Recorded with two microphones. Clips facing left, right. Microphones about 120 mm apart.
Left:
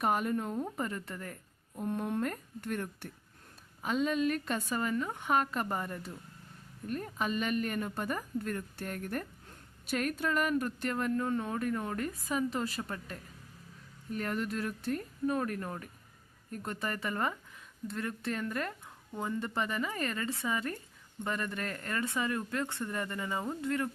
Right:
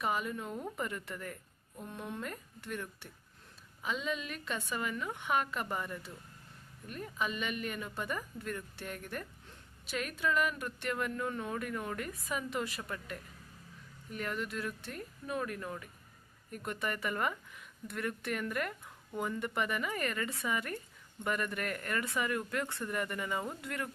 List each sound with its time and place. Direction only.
0.0 s speech: 50° left (ahead or behind)
0.5 s a woman's voice: 30° left (ahead or behind)
1.8 s a woman's voice: 45° left (ahead or behind); by 23.9 s 30° left (ahead or behind)